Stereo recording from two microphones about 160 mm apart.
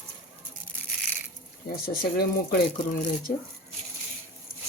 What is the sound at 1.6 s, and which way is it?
Speech, 90° left.